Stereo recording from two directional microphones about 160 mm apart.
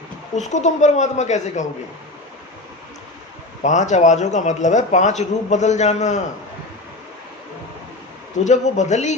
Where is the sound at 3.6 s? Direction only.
50° left (ahead or behind).